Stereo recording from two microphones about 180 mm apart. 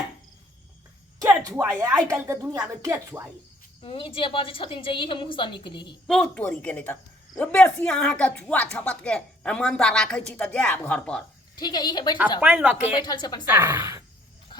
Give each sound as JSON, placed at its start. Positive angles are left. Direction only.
{"t": 1.5, "sound": "speech", "side_deg": -20}
{"t": 3.8, "sound": "a woman's voice", "side_deg": 30}
{"t": 6.1, "sound": "speech", "side_deg": 5}
{"t": 11.5, "sound": "a woman's voice", "side_deg": 25}
{"t": 12.4, "sound": "speech", "side_deg": -5}
{"t": 13.0, "sound": "a woman's voice", "side_deg": 25}
{"t": 13.5, "sound": "speech", "side_deg": -15}